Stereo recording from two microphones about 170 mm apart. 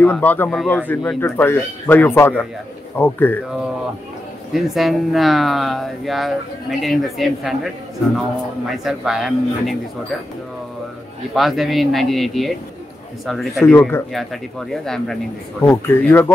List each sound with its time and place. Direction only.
0.0 s speech: 10° left (ahead or behind)
4.5 s speech: centre (ahead or behind)
8.6 s speech: centre (ahead or behind)
11.3 s speech: centre (ahead or behind)
13.6 s speech: 10° left (ahead or behind)
15.6 s speech: 15° left (ahead or behind)